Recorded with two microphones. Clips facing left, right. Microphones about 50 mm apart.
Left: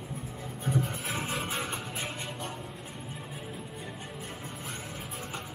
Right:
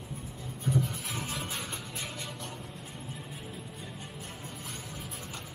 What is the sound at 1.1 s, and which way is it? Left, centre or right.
Music, left.